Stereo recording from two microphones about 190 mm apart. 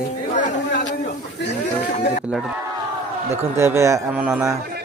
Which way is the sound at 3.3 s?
15° right (ahead or behind).